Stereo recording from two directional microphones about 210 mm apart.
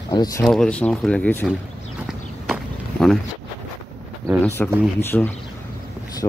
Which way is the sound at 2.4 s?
Centre (ahead or behind).